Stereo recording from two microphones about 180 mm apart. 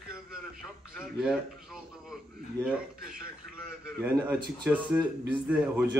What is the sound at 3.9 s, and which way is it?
A man's voice, 5° right (ahead or behind).